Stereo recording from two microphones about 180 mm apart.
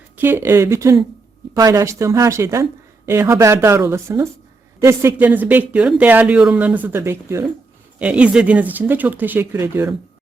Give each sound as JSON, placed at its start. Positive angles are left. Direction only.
{"t": 0.2, "sound": "speech", "side_deg": -10}